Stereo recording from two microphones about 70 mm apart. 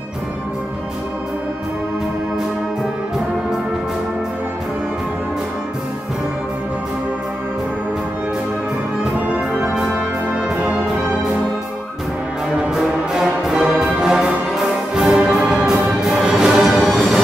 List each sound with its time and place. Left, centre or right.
9.6 s music: centre
10.5 s brass instrument: centre
12.6 s music: centre